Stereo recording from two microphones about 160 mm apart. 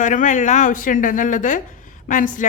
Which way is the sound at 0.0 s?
50° left (ahead or behind).